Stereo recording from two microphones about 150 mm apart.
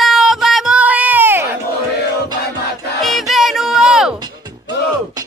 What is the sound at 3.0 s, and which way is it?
Music, centre (ahead or behind).